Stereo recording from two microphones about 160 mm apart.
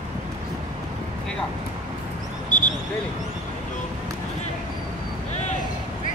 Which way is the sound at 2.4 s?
55° left (ahead or behind).